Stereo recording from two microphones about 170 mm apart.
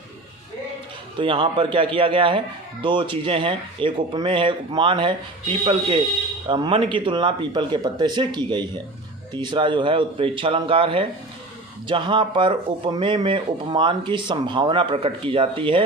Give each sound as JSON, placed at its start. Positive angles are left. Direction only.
{"t": 1.2, "sound": "speech", "side_deg": -30}
{"t": 6.5, "sound": "speech", "side_deg": -30}